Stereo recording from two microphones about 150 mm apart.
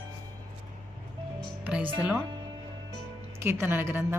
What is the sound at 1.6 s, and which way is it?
Music, 10° right (ahead or behind).